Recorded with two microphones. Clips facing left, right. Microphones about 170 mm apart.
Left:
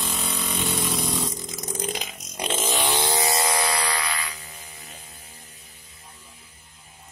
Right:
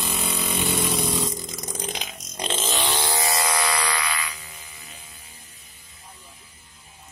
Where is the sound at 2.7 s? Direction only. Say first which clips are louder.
Left 2 dB; 15° left (ahead or behind).